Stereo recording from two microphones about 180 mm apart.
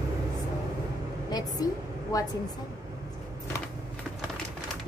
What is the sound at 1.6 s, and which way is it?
Speech, 20° left (ahead or behind).